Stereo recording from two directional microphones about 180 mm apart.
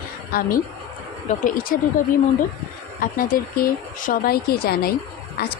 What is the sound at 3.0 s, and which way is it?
Speech, 50° left (ahead or behind).